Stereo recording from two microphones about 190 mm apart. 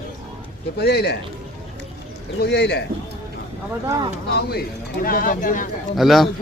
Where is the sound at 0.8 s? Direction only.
60° left (ahead or behind).